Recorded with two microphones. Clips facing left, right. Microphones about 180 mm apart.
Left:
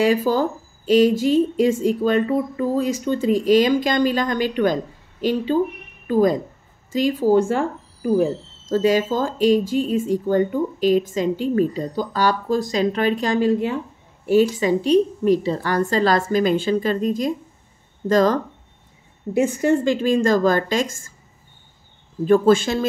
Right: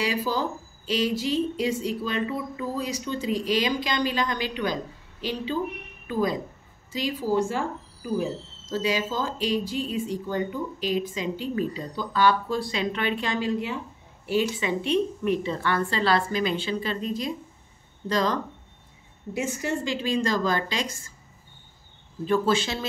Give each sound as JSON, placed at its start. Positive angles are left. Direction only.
{"t": 0.0, "sound": "speech", "side_deg": 50}
{"t": 22.2, "sound": "speech", "side_deg": 50}